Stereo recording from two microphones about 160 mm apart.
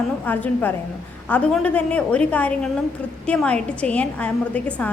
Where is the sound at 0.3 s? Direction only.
10° left (ahead or behind).